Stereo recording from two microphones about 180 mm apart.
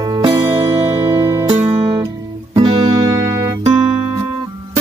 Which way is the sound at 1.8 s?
20° right (ahead or behind).